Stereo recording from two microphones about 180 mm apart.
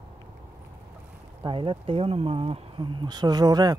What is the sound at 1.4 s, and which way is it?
Speech, 30° right (ahead or behind).